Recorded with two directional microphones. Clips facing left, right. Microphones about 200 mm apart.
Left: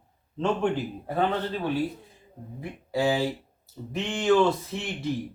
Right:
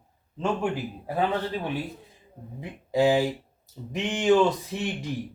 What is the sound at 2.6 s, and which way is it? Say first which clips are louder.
A man's voice: right 4 dB; 20° right (ahead or behind).